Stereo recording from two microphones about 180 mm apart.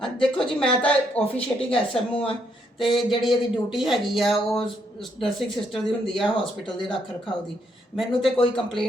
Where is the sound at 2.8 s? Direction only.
25° left (ahead or behind).